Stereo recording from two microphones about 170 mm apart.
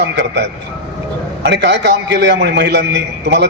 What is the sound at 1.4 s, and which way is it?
A man's voice, 90° right.